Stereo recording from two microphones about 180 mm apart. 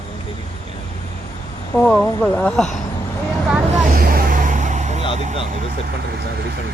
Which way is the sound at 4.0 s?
55° right (ahead or behind).